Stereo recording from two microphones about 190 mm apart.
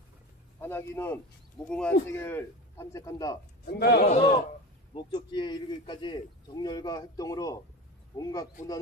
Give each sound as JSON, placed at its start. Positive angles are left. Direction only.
{"t": 0.6, "sound": "speech", "side_deg": 10}
{"t": 3.6, "sound": "a man's voice", "side_deg": 60}
{"t": 4.9, "sound": "a man's voice", "side_deg": 25}